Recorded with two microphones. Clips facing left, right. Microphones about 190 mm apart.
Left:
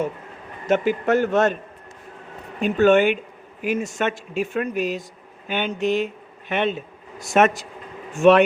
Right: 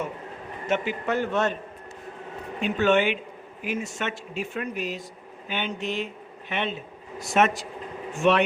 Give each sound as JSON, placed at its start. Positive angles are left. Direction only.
{"t": 0.7, "sound": "speech", "side_deg": 45}
{"t": 2.6, "sound": "speech", "side_deg": 45}